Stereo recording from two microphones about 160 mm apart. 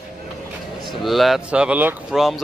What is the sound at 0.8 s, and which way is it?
Speech, centre (ahead or behind).